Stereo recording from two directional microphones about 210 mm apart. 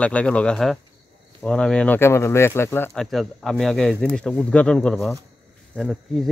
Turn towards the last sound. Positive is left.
turn(degrees=0)  # may be behind; listen again after turning